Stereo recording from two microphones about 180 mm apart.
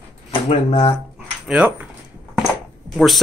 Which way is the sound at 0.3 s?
30° left (ahead or behind).